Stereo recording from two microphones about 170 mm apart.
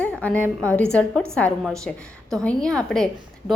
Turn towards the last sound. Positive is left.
turn(degrees=5)  # may be behind; listen again after turning